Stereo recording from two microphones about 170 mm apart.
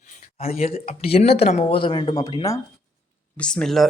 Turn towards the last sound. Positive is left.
turn(degrees=0)  # may be behind; listen again after turning